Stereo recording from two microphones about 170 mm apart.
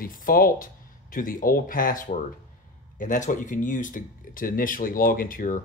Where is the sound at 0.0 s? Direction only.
55° left (ahead or behind).